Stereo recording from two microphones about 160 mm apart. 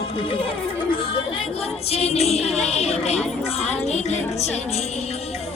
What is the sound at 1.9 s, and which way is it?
Music, 40° left (ahead or behind).